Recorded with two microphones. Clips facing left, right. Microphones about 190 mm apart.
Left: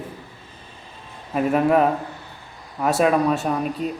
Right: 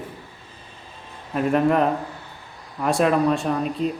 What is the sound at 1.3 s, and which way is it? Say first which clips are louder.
Speech: left 1 dB; 5° left (ahead or behind).